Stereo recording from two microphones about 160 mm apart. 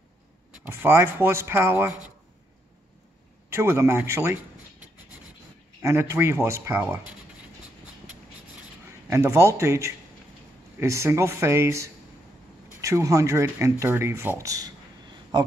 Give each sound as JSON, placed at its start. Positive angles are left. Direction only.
{"t": 0.7, "sound": "speech", "side_deg": -15}
{"t": 3.4, "sound": "speech", "side_deg": -15}
{"t": 5.8, "sound": "speech", "side_deg": -15}
{"t": 9.1, "sound": "speech", "side_deg": -15}